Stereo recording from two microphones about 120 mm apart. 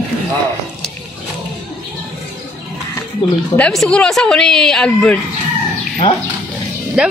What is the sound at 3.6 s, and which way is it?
A woman's voice, 10° left (ahead or behind).